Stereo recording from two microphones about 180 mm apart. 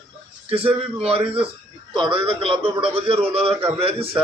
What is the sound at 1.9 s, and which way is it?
A man's voice, 25° right (ahead or behind).